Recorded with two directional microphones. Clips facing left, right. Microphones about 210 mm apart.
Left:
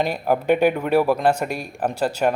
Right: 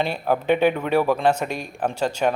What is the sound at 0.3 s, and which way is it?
A man's voice, 10° left (ahead or behind).